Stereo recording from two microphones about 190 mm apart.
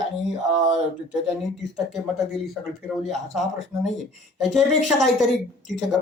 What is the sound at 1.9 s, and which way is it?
Speech, centre (ahead or behind).